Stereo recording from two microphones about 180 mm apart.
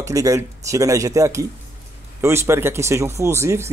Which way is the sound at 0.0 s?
20° right (ahead or behind).